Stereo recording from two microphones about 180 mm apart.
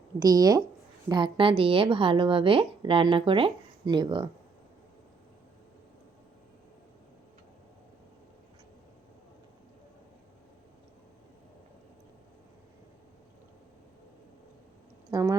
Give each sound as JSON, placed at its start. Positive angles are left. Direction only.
{"t": 0.2, "sound": "a woman's voice", "side_deg": -20}
{"t": 15.1, "sound": "speech", "side_deg": -20}